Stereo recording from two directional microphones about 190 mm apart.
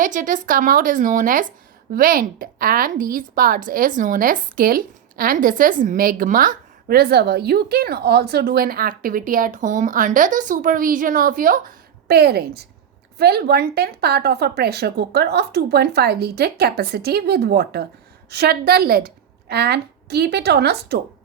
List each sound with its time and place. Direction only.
0.0 s a woman's voice: 45° right (ahead or behind); by 21.0 s 60° right (ahead or behind)